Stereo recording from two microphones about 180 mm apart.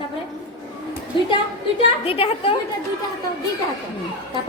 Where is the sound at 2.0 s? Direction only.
30° left (ahead or behind).